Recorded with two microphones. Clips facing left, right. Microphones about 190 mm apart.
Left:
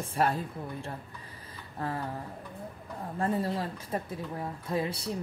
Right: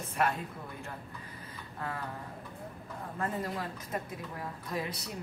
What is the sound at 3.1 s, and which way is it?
Speech, 30° left (ahead or behind).